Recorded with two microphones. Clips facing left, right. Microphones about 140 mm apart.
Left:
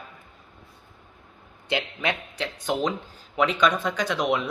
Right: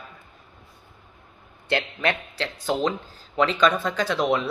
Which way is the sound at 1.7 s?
10° left (ahead or behind).